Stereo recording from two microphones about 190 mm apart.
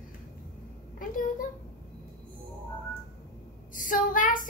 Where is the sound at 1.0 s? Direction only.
45° left (ahead or behind).